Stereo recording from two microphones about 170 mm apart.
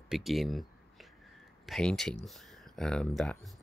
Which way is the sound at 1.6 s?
Centre (ahead or behind).